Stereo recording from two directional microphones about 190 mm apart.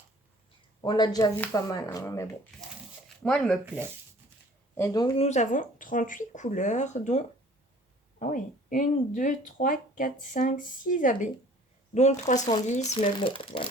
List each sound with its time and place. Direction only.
0.8 s speech: 20° left (ahead or behind); by 3.6 s 5° left (ahead or behind)
4.7 s speech: 15° left (ahead or behind)
5.1 s speech: 35° left (ahead or behind)
13.1 s speech: 25° left (ahead or behind)